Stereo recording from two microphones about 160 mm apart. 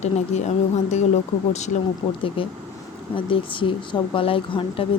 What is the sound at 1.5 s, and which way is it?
Speech, 45° left (ahead or behind).